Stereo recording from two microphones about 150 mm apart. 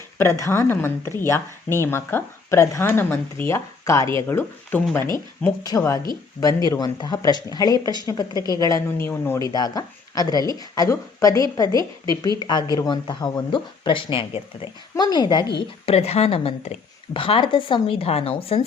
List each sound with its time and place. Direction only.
0.2 s speech: 20° left (ahead or behind)
9.4 s speech: 25° left (ahead or behind)
15.5 s speech: 45° left (ahead or behind)